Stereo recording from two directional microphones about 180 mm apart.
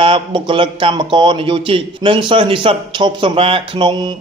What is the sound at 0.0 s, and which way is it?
Speech, 30° right (ahead or behind).